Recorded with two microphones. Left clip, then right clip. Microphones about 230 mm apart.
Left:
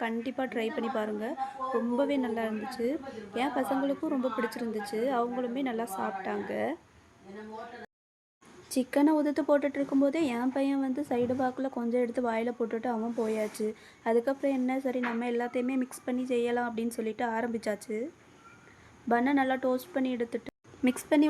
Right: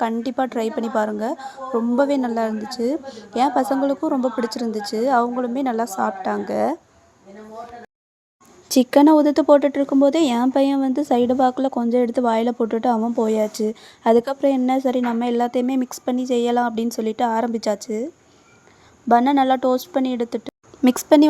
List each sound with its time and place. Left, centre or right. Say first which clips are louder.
0.0 s a woman's voice: right 11 dB; right
8.7 s a woman's voice: right 13 dB; right